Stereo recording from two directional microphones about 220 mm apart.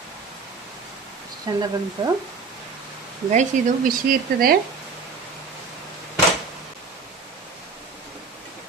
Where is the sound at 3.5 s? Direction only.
35° right (ahead or behind).